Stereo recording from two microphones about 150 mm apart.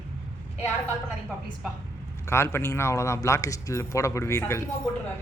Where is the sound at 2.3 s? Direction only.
15° left (ahead or behind).